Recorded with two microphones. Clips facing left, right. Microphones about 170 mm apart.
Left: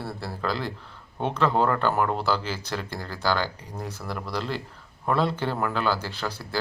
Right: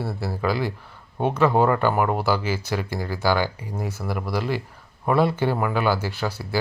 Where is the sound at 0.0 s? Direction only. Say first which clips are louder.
Right 5 dB; 5° right (ahead or behind).